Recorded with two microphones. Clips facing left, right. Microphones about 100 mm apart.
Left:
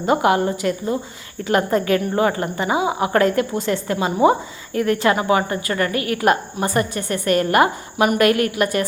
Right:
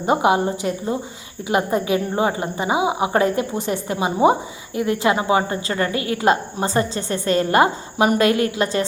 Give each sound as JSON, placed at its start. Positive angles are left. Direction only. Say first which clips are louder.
{"t": 0.0, "sound": "a woman's voice", "louder": "even", "side_deg": -20}